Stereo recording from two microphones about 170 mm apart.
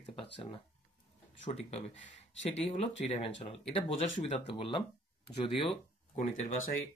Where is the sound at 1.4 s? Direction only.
40° left (ahead or behind).